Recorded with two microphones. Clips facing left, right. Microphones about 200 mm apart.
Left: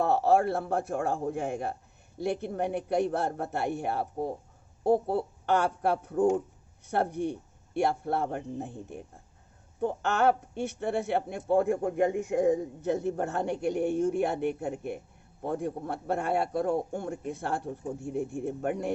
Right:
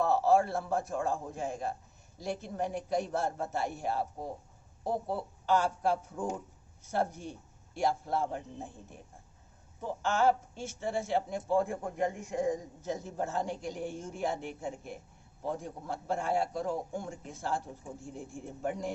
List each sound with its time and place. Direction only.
0.0 s a man's voice: 60° left (ahead or behind)